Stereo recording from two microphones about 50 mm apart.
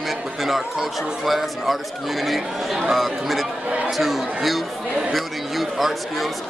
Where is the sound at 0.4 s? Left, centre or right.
Centre.